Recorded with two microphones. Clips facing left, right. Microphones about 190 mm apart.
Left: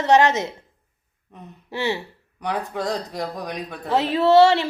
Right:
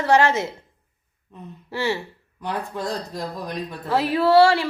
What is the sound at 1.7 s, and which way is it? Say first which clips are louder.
Speech: even; 20° left (ahead or behind).